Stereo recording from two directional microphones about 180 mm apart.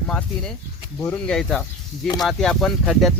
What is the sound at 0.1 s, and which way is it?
Speech, 5° left (ahead or behind).